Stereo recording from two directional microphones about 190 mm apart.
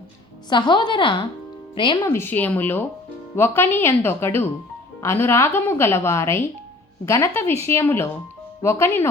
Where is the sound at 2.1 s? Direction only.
10° left (ahead or behind).